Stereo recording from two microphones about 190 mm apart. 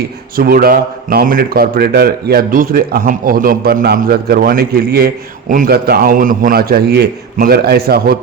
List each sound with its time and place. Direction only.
0.3 s a man's voice: 50° right (ahead or behind)